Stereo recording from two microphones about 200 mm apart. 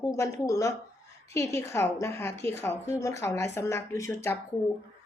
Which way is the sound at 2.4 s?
30° right (ahead or behind).